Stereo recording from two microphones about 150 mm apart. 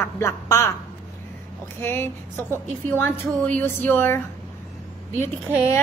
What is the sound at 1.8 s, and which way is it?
A woman's voice, 15° left (ahead or behind).